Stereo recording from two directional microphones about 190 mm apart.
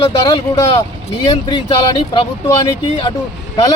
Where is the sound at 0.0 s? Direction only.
20° left (ahead or behind).